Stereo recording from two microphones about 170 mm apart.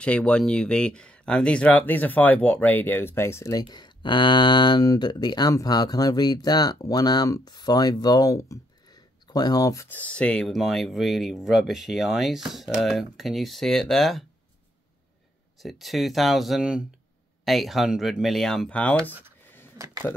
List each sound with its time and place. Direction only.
0.0 s speech: 5° left (ahead or behind)
3.6 s speech: 25° left (ahead or behind); by 14.2 s centre (ahead or behind)
15.6 s speech: centre (ahead or behind)
19.4 s a sound: 15° left (ahead or behind)